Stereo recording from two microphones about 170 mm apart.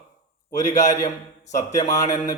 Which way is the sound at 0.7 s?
45° left (ahead or behind).